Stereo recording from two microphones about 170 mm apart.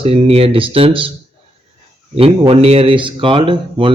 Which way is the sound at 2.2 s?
35° right (ahead or behind).